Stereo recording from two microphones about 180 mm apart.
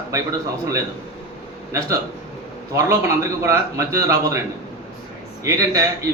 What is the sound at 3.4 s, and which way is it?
Speech, 15° right (ahead or behind).